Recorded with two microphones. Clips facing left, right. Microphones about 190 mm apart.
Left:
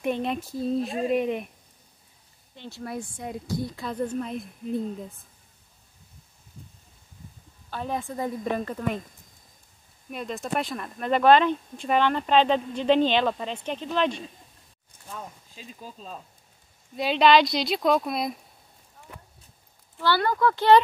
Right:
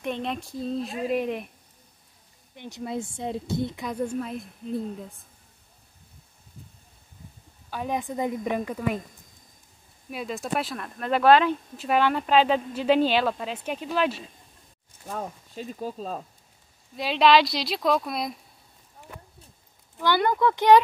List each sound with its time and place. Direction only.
0.0 s speech: 5° left (ahead or behind)
2.5 s a woman's voice: 15° right (ahead or behind); by 5.2 s centre (ahead or behind)
7.7 s a woman's voice: 15° right (ahead or behind)
10.1 s speech: 5° right (ahead or behind)
15.0 s speech: 50° right (ahead or behind)
16.9 s speech: centre (ahead or behind)
20.0 s speech: 20° right (ahead or behind)